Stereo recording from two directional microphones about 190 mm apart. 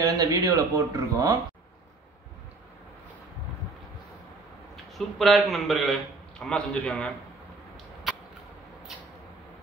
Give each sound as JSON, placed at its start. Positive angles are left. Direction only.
{"t": 0.0, "sound": "speech", "side_deg": -20}
{"t": 4.9, "sound": "a man's voice", "side_deg": 0}